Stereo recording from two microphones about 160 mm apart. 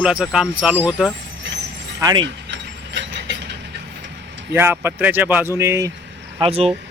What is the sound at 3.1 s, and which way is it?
Mechanisms, 90° right.